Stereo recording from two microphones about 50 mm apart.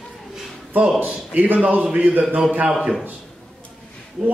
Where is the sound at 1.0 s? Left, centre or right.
Right.